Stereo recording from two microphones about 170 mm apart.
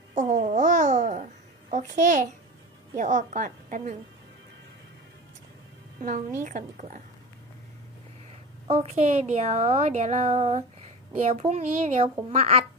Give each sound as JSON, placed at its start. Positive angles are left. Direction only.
{"t": 0.2, "sound": "babbling", "side_deg": -45}
{"t": 1.7, "sound": "a woman's voice", "side_deg": -45}
{"t": 6.0, "sound": "a woman's voice", "side_deg": -50}
{"t": 8.6, "sound": "a woman's voice", "side_deg": -35}